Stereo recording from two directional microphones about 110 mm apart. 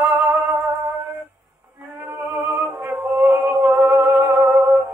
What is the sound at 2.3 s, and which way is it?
Music, 20° right (ahead or behind).